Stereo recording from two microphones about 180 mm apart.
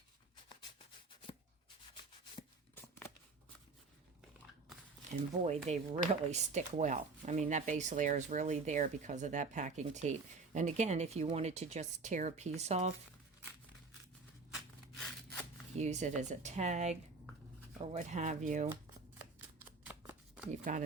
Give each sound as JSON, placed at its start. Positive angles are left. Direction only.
{"t": 5.5, "sound": "speech", "side_deg": -40}
{"t": 14.9, "sound": "a sound", "side_deg": 0}
{"t": 15.8, "sound": "speech", "side_deg": -40}
{"t": 19.5, "sound": "shuffling cards", "side_deg": -10}
{"t": 20.5, "sound": "speech", "side_deg": -45}